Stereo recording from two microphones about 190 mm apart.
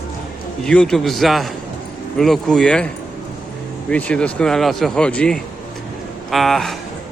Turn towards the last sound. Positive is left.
turn(degrees=0)  # may be behind; listen again after turning